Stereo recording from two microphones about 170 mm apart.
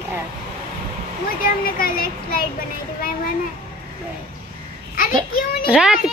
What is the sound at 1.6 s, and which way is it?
Speech, 60° left (ahead or behind).